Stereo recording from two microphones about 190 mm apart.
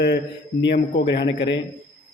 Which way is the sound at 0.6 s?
65° left (ahead or behind).